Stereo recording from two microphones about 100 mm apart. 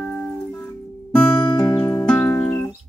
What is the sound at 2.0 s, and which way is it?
Music, 10° left (ahead or behind).